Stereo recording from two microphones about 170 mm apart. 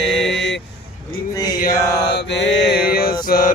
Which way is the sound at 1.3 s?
20° left (ahead or behind).